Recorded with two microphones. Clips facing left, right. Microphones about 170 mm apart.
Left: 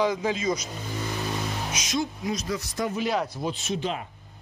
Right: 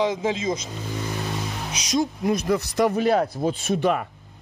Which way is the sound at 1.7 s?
40° right (ahead or behind).